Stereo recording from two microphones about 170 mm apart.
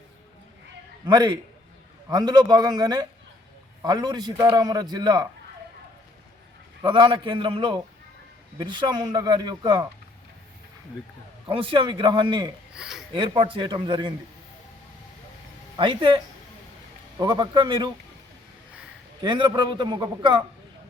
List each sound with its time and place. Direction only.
1.0 s a man's voice: 25° right (ahead or behind)
6.8 s a man's voice: 30° right (ahead or behind)
11.4 s a man's voice: 30° right (ahead or behind)
12.7 s speech: 5° right (ahead or behind)
13.1 s a man's voice: 30° right (ahead or behind)
15.7 s a man's voice: 30° right (ahead or behind)
19.2 s a man's voice: 25° right (ahead or behind)